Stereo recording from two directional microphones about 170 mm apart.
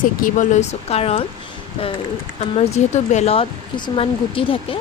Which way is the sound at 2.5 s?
40° left (ahead or behind).